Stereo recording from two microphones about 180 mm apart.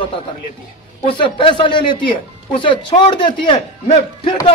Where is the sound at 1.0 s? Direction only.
30° left (ahead or behind).